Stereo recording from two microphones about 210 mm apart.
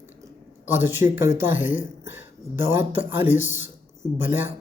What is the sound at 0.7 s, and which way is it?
Speech, 10° right (ahead or behind).